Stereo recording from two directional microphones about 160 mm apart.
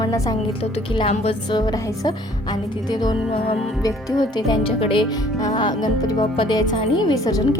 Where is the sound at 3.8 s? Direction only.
25° left (ahead or behind).